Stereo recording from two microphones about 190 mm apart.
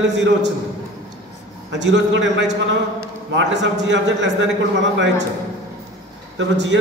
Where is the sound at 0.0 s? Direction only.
65° right (ahead or behind).